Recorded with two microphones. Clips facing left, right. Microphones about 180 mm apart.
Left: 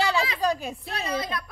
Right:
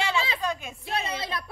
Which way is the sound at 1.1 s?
25° right (ahead or behind).